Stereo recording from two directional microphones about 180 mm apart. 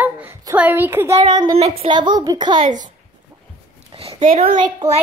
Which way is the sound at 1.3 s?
25° right (ahead or behind).